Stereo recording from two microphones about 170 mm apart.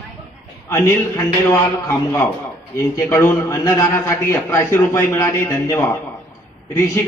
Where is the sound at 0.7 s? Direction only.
15° left (ahead or behind).